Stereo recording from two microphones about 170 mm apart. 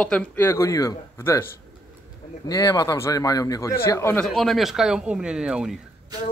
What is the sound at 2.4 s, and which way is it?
Speech, 20° left (ahead or behind).